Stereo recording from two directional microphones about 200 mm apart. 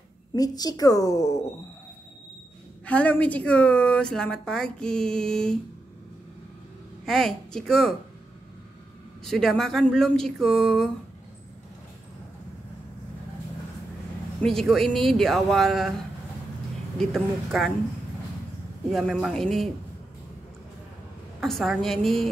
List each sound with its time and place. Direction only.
0.4 s a woman's voice: 20° left (ahead or behind)
2.8 s a woman's voice: 5° left (ahead or behind)
7.1 s a woman's voice: centre (ahead or behind)
9.2 s a woman's voice: centre (ahead or behind)
14.4 s a woman's voice: centre (ahead or behind)
17.0 s a woman's voice: centre (ahead or behind)
18.9 s a woman's voice: centre (ahead or behind)
21.4 s a woman's voice: centre (ahead or behind)